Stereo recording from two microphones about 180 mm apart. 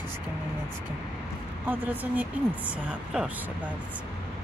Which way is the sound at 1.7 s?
10° right (ahead or behind).